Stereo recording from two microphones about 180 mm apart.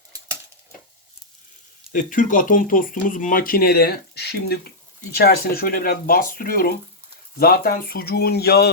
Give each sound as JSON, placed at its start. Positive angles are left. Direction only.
{"t": 1.9, "sound": "speech", "side_deg": 45}